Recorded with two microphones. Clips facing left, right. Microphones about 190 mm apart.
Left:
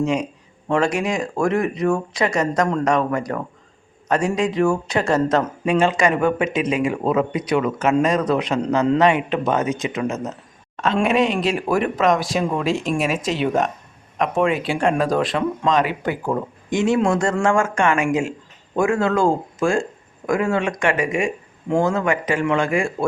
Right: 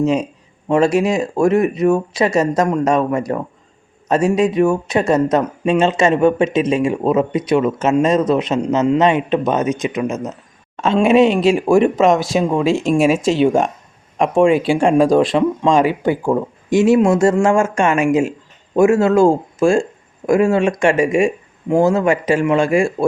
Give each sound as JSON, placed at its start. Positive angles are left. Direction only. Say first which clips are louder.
{"t": 0.0, "sound": "speech", "louder": "right 4 dB", "side_deg": -25}
{"t": 10.8, "sound": "a man's voice", "louder": "right 6 dB", "side_deg": -25}